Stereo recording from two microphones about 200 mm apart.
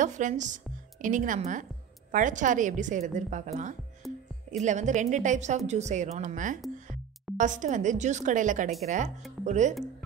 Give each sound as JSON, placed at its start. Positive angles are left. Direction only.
{"t": 0.0, "sound": "a woman's voice", "side_deg": -40}
{"t": 4.0, "sound": "music", "side_deg": 0}
{"t": 4.5, "sound": "a woman's voice", "side_deg": -35}